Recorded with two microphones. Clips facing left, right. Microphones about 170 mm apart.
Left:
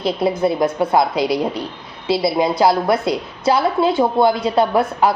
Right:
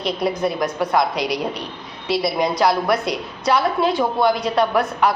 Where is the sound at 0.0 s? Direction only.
25° left (ahead or behind).